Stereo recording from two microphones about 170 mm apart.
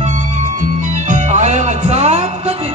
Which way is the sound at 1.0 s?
45° right (ahead or behind).